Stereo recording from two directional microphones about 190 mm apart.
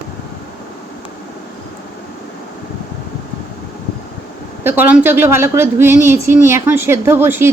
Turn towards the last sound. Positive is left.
turn(degrees=-10)  # may be behind; listen again after turning